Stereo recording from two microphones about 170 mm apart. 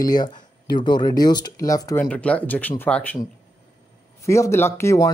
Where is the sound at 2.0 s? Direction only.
5° left (ahead or behind).